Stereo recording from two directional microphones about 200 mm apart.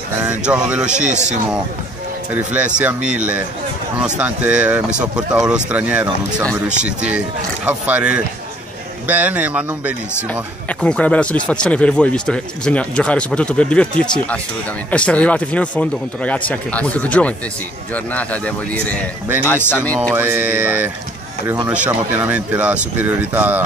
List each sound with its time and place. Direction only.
0.2 s speech: 5° right (ahead or behind)
0.9 s speech: 35° right (ahead or behind)
2.3 s speech: 5° right (ahead or behind)
10.7 s speech: 5° left (ahead or behind)
20.0 s speech: 10° right (ahead or behind)